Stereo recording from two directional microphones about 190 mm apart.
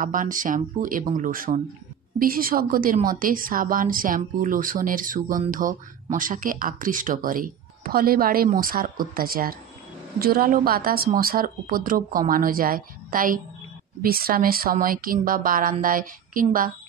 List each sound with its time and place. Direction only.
0.0 s speech: 45° right (ahead or behind)